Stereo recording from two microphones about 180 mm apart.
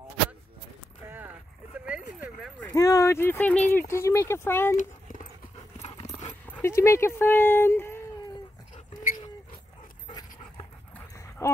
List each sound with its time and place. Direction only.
1.9 s a sound: 5° right (ahead or behind)
2.7 s speech: 20° left (ahead or behind)
4.7 s a sound: 45° left (ahead or behind)
5.9 s dog: 25° left (ahead or behind)
6.4 s speech: 15° left (ahead or behind)
8.7 s dog: 50° left (ahead or behind)
11.1 s dog: 15° left (ahead or behind)